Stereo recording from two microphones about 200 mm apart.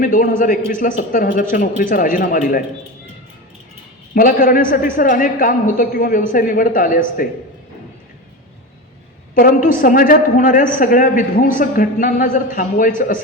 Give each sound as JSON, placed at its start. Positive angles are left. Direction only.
{"t": 0.0, "sound": "a man's voice", "side_deg": 45}
{"t": 4.1, "sound": "a man's voice", "side_deg": 45}
{"t": 9.3, "sound": "a man's voice", "side_deg": 45}